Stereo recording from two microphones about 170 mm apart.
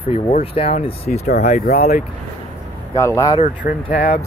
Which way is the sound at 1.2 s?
60° left (ahead or behind).